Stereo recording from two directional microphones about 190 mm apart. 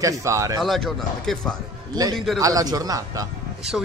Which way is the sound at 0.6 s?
Centre (ahead or behind).